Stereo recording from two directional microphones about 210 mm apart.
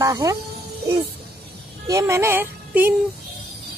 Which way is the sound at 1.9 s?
15° right (ahead or behind).